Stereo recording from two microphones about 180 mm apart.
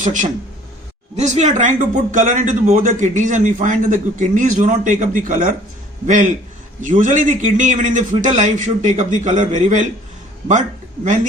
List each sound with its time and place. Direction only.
0.0 s a man's voice: 45° right (ahead or behind)
11.0 s speech: 45° right (ahead or behind)